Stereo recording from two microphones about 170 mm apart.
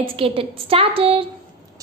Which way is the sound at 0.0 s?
30° right (ahead or behind).